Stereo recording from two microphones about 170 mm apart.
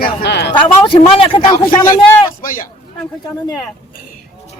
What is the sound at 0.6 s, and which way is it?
Speech, 30° left (ahead or behind).